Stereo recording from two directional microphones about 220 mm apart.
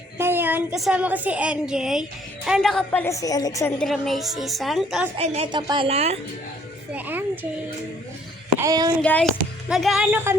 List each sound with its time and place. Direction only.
0.2 s a woman's voice: 10° right (ahead or behind); by 3.7 s 15° left (ahead or behind)
3.8 s speech: centre (ahead or behind)
5.1 s a woman's voice: 30° right (ahead or behind)
6.9 s speech: 10° right (ahead or behind)
8.5 s speech: 15° right (ahead or behind)
9.0 s a woman's voice: 5° left (ahead or behind)